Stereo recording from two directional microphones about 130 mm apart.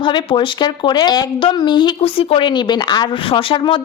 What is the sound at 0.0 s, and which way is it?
Speech, 35° left (ahead or behind).